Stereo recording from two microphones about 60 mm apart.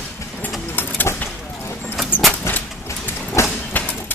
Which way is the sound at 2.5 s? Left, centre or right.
Left.